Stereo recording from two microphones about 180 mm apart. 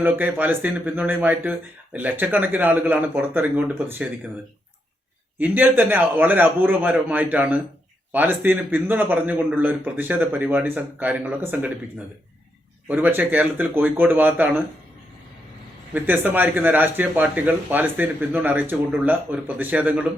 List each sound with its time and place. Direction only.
0.0 s speech: 10° right (ahead or behind)
5.4 s speech: 10° right (ahead or behind)
16.0 s speech: 10° right (ahead or behind)